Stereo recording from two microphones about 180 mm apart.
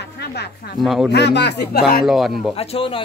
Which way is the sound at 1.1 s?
70° left (ahead or behind).